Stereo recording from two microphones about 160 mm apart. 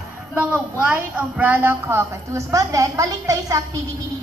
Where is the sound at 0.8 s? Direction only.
10° right (ahead or behind).